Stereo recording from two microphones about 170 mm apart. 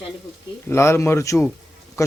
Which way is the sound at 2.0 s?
20° left (ahead or behind).